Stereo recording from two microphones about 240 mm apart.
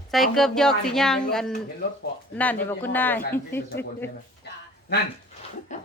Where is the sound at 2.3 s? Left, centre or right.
Centre.